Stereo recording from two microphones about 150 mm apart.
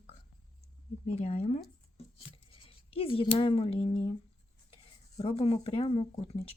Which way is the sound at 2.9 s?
40° left (ahead or behind).